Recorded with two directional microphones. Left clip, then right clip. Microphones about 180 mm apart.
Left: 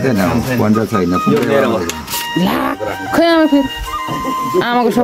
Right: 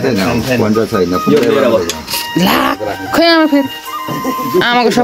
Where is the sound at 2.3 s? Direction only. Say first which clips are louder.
Right 5 dB; 5° left (ahead or behind).